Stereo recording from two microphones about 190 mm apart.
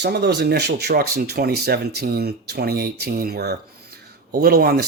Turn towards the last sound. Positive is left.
turn(degrees=-55)  # may be behind; listen again after turning